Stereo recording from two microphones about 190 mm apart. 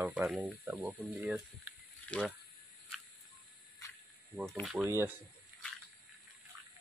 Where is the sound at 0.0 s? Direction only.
10° right (ahead or behind).